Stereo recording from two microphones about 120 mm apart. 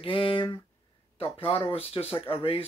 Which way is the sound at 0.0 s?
45° left (ahead or behind).